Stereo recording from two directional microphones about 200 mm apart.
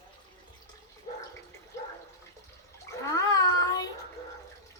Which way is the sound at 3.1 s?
20° left (ahead or behind).